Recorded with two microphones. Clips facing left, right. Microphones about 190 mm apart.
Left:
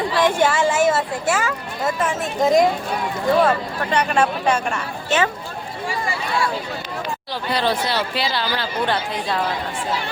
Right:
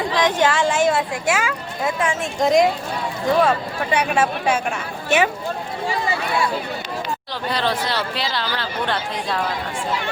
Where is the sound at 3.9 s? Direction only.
5° right (ahead or behind).